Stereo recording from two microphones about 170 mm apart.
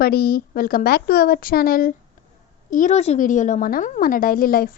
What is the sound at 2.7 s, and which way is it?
A woman's voice, 45° left (ahead or behind).